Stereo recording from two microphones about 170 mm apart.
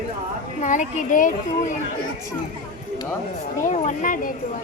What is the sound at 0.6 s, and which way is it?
Speech, 45° left (ahead or behind).